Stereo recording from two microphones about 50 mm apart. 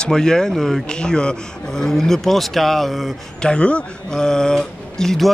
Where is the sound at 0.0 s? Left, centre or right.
Centre.